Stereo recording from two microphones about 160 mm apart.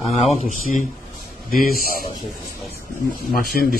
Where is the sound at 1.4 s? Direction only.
65° left (ahead or behind).